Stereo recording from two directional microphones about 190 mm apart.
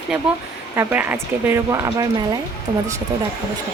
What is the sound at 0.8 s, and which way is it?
Speech, 10° right (ahead or behind).